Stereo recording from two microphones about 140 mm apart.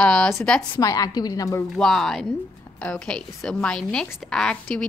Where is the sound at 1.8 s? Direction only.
Centre (ahead or behind).